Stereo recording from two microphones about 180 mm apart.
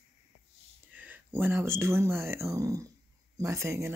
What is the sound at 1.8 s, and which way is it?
Speech, 15° right (ahead or behind).